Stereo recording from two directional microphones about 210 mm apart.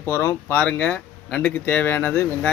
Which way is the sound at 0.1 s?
10° left (ahead or behind).